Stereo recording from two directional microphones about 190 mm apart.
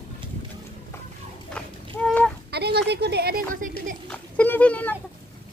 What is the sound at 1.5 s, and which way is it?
Goose, 5° left (ahead or behind).